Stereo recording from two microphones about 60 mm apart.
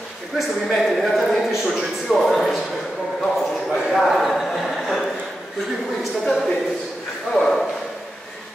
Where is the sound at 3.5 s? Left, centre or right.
Centre.